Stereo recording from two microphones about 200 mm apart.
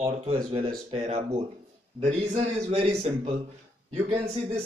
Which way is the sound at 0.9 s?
30° right (ahead or behind).